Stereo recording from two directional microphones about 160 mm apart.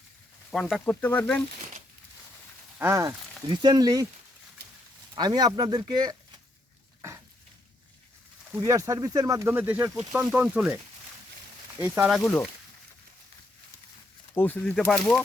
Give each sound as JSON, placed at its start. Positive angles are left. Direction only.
{"t": 0.5, "sound": "speech", "side_deg": 5}
{"t": 2.7, "sound": "speech", "side_deg": -15}
{"t": 3.5, "sound": "speech", "side_deg": -25}
{"t": 5.1, "sound": "speech", "side_deg": -25}
{"t": 8.6, "sound": "speech", "side_deg": -20}
{"t": 11.8, "sound": "speech", "side_deg": -5}
{"t": 14.3, "sound": "speech", "side_deg": 10}